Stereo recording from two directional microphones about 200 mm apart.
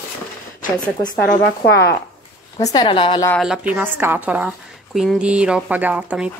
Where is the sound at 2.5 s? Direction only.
20° left (ahead or behind).